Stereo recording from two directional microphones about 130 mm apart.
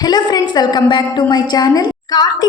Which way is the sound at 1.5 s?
30° left (ahead or behind).